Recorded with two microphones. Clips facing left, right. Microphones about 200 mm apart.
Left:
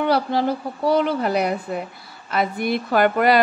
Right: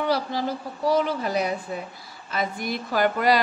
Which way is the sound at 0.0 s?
60° left (ahead or behind).